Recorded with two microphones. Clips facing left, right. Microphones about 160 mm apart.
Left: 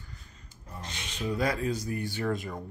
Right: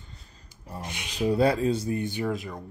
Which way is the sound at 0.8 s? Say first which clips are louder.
Right 3 dB; 15° right (ahead or behind).